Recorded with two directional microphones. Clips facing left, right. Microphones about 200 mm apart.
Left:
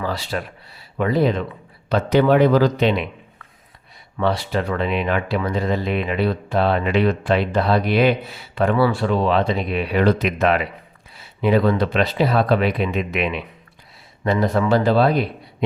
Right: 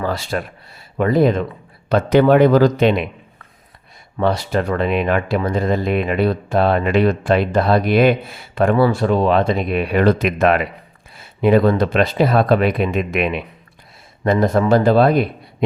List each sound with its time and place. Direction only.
0.0 s speech: 50° right (ahead or behind)
4.2 s speech: 45° right (ahead or behind)